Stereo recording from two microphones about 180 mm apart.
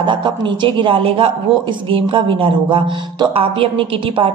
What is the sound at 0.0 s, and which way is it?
A woman's voice, 25° right (ahead or behind).